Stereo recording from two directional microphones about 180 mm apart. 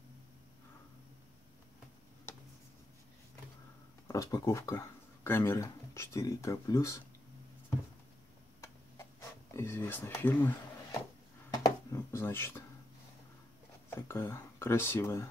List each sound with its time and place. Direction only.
4.1 s speech: 15° left (ahead or behind)
9.6 s speech: 15° left (ahead or behind)
11.5 s a sound: 20° left (ahead or behind)
13.8 s speech: 15° left (ahead or behind)